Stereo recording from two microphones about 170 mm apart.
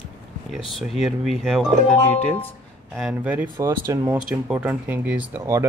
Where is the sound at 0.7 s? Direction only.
Centre (ahead or behind).